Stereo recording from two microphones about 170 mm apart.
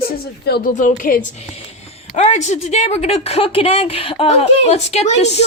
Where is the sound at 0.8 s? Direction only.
50° left (ahead or behind).